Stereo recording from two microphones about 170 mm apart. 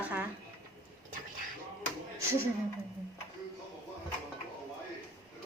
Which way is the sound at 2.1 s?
15° right (ahead or behind).